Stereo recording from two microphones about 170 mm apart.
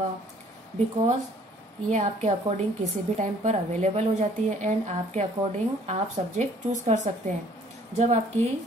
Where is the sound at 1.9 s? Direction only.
45° right (ahead or behind).